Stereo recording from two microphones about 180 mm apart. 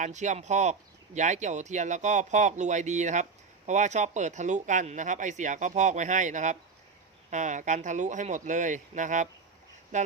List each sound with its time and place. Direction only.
0.0 s speech: 40° right (ahead or behind)